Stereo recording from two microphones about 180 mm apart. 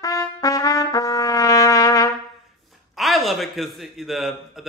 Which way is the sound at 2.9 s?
Centre (ahead or behind).